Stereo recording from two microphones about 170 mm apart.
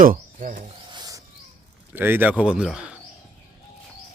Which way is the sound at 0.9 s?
25° right (ahead or behind).